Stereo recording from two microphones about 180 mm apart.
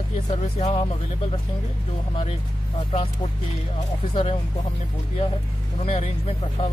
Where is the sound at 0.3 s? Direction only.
35° left (ahead or behind).